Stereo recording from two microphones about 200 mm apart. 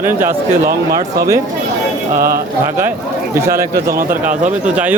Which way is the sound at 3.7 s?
50° right (ahead or behind).